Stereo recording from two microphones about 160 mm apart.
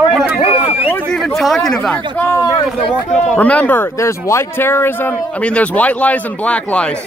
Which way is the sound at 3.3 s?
10° left (ahead or behind).